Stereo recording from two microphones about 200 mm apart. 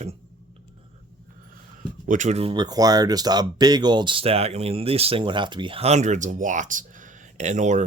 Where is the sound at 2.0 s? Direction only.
40° right (ahead or behind).